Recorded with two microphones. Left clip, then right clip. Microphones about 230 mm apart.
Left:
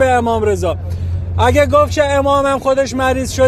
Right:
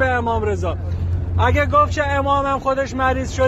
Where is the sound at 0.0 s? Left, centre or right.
Left.